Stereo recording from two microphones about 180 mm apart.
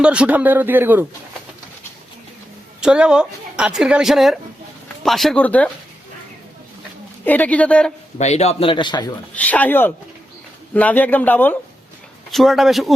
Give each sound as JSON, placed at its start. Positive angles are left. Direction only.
{"t": 0.0, "sound": "speech", "side_deg": -5}
{"t": 2.8, "sound": "speech", "side_deg": -5}
{"t": 7.3, "sound": "a man's voice", "side_deg": 10}
{"t": 8.2, "sound": "speech", "side_deg": 35}
{"t": 9.3, "sound": "a man's voice", "side_deg": 10}